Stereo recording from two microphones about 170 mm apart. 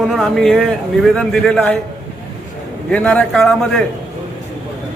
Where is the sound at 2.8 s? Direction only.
5° left (ahead or behind).